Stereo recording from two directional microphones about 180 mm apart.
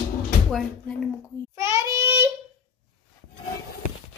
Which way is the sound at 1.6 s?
15° right (ahead or behind).